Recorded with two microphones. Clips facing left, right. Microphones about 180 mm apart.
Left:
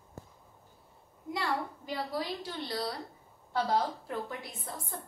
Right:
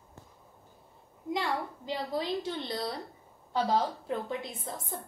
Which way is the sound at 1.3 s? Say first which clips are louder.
Right 1 dB; 20° right (ahead or behind).